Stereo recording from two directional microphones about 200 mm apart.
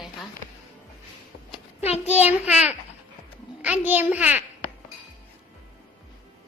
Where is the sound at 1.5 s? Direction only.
30° left (ahead or behind).